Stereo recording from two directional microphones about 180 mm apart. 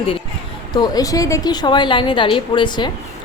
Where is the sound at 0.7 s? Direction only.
20° left (ahead or behind).